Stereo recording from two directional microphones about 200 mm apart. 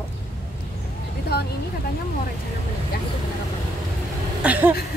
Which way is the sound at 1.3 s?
50° left (ahead or behind).